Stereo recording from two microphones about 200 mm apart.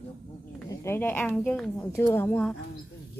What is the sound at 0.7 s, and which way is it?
A woman's voice, 15° left (ahead or behind).